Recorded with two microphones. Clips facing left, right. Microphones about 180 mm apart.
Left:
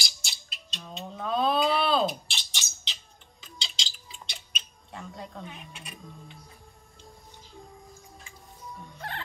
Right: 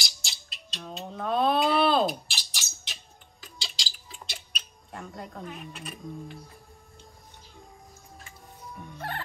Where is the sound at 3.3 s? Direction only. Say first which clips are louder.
Even; centre (ahead or behind).